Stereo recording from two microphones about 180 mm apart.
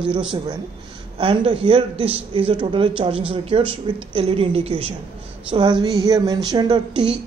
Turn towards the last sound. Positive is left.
turn(degrees=-25)  # may be behind; listen again after turning